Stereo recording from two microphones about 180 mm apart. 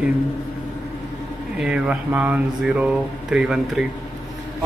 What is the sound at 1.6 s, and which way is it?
Speech, 5° right (ahead or behind).